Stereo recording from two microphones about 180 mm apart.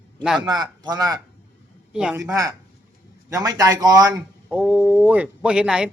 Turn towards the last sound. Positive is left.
turn(degrees=-5)  # may be behind; listen again after turning